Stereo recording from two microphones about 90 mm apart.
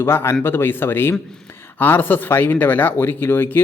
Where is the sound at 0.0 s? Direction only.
30° left (ahead or behind).